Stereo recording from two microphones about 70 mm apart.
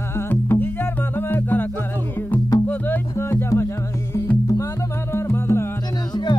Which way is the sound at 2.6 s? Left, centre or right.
Left.